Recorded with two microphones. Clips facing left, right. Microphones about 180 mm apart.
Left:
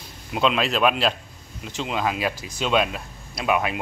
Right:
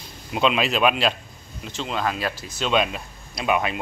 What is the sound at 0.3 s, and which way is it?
Speech, centre (ahead or behind).